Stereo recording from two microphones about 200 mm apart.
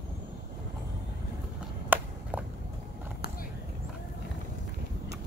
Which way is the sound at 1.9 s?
10° right (ahead or behind).